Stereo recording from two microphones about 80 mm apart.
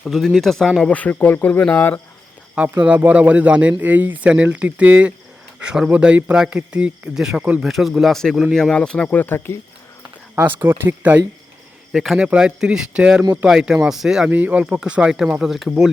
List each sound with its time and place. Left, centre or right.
0.0 s speech: centre
0.8 s speech: centre
2.8 s speech: centre
7.2 s speech: centre
7.4 s speech: centre
7.7 s speech: centre
8.7 s speech: centre
9.1 s speech: left
10.3 s speech: right
11.9 s speech: centre
14.3 s speech: right